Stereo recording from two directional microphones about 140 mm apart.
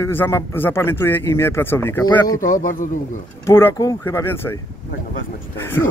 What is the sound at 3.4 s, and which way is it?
Speech, 20° left (ahead or behind).